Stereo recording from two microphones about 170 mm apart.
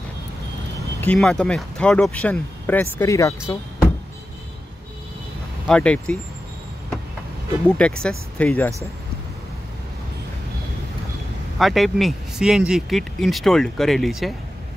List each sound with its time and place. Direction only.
0.7 s speech: 10° left (ahead or behind)
5.7 s speech: 5° left (ahead or behind)
7.6 s speech: 5° left (ahead or behind)
11.5 s speech: centre (ahead or behind)